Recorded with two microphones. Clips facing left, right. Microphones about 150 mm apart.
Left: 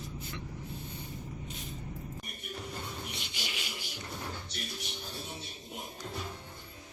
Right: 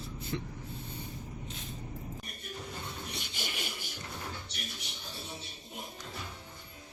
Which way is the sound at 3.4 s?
50° right (ahead or behind).